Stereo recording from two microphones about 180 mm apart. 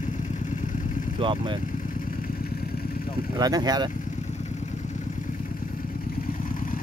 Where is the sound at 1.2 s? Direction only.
30° right (ahead or behind).